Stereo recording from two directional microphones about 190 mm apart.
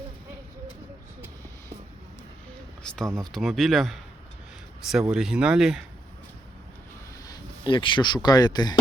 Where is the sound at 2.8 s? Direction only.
Centre (ahead or behind).